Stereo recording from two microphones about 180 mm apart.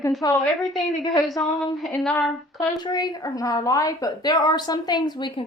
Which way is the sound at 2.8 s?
20° left (ahead or behind).